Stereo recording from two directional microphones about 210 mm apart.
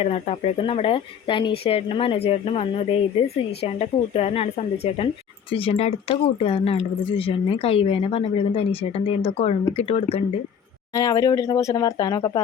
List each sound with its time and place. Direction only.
0.0 s speech: 30° left (ahead or behind)
10.9 s speech: 15° left (ahead or behind)